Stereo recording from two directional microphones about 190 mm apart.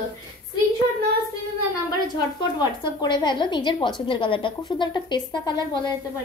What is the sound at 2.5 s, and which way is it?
A woman's voice, 25° left (ahead or behind).